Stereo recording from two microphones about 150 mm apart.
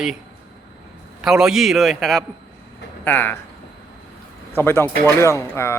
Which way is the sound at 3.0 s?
10° left (ahead or behind).